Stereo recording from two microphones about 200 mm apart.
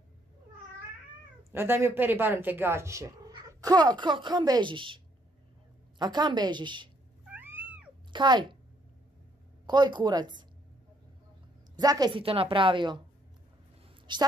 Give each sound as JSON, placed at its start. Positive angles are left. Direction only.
{"t": 1.5, "sound": "a woman's voice", "side_deg": -10}
{"t": 7.2, "sound": "cat", "side_deg": -10}
{"t": 8.1, "sound": "a child's voice", "side_deg": -20}
{"t": 9.7, "sound": "a woman's voice", "side_deg": -20}
{"t": 11.7, "sound": "a woman's voice", "side_deg": -20}
{"t": 14.1, "sound": "a woman's voice", "side_deg": -25}